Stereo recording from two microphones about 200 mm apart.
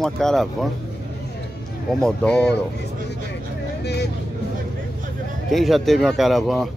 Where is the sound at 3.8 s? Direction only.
55° left (ahead or behind).